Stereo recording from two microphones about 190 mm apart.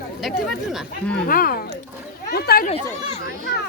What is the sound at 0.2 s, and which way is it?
Speech, centre (ahead or behind).